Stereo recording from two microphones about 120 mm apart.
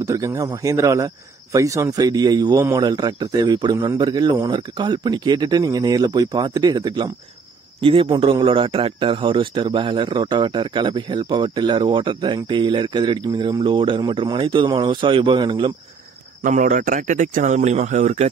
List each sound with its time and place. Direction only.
0.0 s speech: 25° right (ahead or behind)
16.5 s a man's voice: 90° right